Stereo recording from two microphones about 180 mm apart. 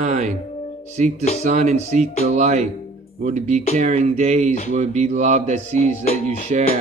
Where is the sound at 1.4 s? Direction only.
40° right (ahead or behind).